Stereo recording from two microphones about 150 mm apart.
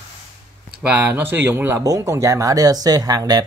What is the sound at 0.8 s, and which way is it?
Speech, 10° right (ahead or behind).